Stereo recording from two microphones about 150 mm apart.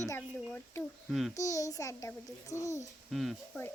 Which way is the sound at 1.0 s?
Centre (ahead or behind).